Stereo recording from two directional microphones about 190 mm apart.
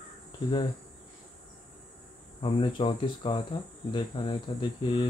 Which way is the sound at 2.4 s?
30° left (ahead or behind).